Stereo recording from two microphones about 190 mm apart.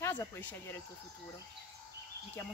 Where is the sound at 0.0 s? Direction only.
15° left (ahead or behind).